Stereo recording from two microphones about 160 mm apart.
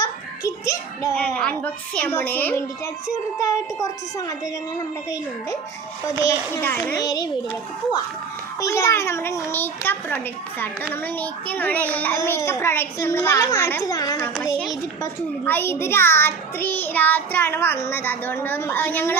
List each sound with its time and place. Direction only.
0.0 s child singing: 20° left (ahead or behind)
1.2 s a child's voice: 5° left (ahead or behind)
6.2 s a child's voice: 15° left (ahead or behind)
6.9 s a child's voice: 25° left (ahead or behind)
8.6 s a child's voice: 15° left (ahead or behind)